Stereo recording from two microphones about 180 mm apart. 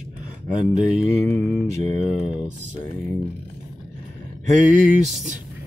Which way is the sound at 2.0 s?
35° left (ahead or behind).